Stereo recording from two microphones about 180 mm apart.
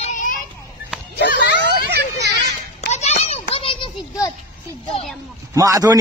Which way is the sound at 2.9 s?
35° left (ahead or behind).